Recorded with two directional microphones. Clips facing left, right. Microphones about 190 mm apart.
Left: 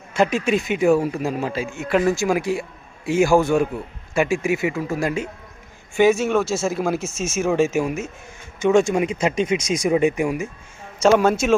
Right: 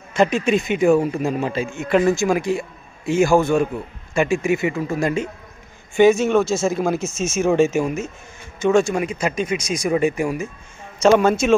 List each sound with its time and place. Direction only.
0.1 s a man's voice: 5° left (ahead or behind)
11.0 s a man's voice: 5° left (ahead or behind)